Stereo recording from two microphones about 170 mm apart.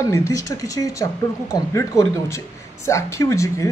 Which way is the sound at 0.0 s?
20° left (ahead or behind).